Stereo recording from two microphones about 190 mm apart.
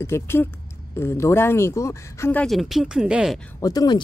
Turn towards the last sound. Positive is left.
turn(degrees=20)  # may be behind; listen again after turning